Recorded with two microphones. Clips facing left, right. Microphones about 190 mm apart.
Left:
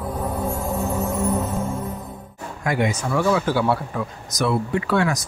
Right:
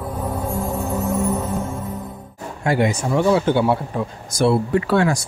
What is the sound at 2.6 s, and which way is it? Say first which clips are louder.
A man's voice: right 3 dB; 30° right (ahead or behind).